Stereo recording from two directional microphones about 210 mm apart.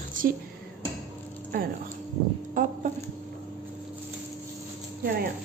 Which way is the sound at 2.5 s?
40° right (ahead or behind).